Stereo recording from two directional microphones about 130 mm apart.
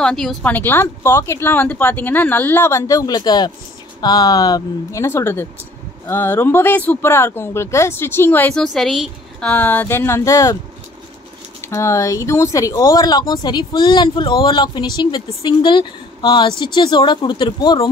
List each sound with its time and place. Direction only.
0.0 s speech: 5° left (ahead or behind)
8.7 s a woman's voice: centre (ahead or behind)
9.5 s speech: 15° left (ahead or behind)
11.7 s speech: 20° left (ahead or behind)